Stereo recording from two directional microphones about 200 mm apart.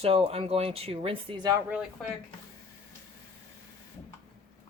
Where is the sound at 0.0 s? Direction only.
30° right (ahead or behind).